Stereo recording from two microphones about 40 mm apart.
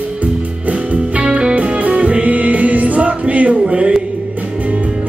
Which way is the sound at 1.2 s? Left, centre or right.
Right.